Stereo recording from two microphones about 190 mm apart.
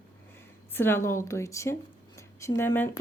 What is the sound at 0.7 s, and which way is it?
Speech, 10° left (ahead or behind).